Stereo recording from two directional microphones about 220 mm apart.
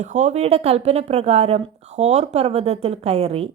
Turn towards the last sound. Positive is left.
turn(degrees=-30)  # may be behind; listen again after turning